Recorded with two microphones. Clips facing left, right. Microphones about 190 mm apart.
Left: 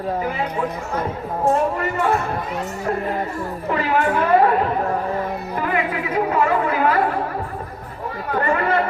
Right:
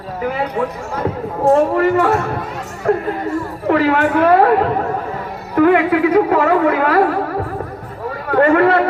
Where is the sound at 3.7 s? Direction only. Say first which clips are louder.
Right 6 dB; 75° right (ahead or behind).